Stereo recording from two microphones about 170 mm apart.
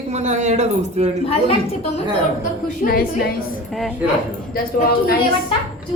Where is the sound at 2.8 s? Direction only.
60° left (ahead or behind).